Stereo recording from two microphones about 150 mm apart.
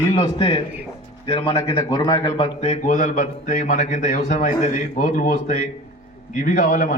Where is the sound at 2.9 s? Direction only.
60° left (ahead or behind).